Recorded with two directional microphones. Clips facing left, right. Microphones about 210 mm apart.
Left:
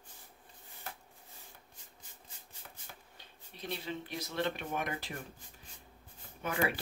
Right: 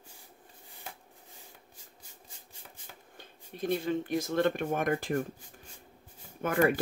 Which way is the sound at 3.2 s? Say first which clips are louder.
Right 13 dB; 50° right (ahead or behind).